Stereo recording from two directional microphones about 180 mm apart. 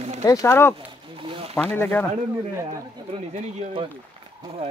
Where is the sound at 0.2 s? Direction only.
20° left (ahead or behind).